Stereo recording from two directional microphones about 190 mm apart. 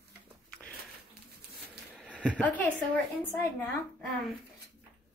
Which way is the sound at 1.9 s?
5° right (ahead or behind).